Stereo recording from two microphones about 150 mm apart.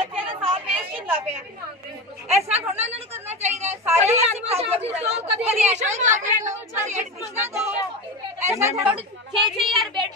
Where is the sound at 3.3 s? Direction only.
45° right (ahead or behind).